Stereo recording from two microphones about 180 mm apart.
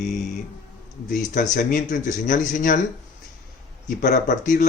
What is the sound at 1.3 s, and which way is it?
Speech, 45° left (ahead or behind).